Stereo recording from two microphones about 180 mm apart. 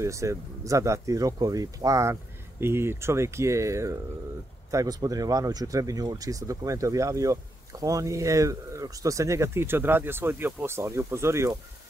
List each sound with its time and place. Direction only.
0.0 s speech: 15° right (ahead or behind)